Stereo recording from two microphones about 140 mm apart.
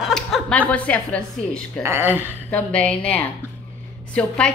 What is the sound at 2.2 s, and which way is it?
A woman's voice, 10° left (ahead or behind).